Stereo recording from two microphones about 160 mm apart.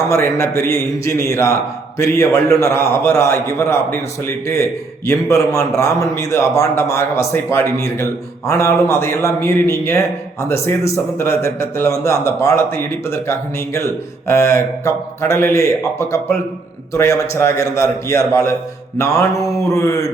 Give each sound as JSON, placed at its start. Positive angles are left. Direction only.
{"t": 0.1, "sound": "a man's voice", "side_deg": 15}
{"t": 18.9, "sound": "mantra", "side_deg": 20}